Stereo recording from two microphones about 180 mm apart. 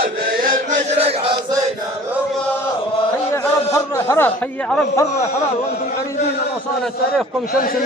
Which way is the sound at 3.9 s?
15° left (ahead or behind).